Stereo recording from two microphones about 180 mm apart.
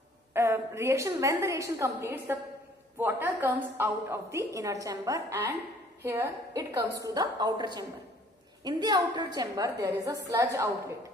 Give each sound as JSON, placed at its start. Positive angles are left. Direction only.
{"t": 0.3, "sound": "a woman's voice", "side_deg": -15}